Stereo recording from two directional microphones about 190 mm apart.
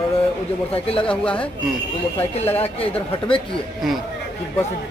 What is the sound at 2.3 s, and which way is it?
A man's voice, 30° left (ahead or behind).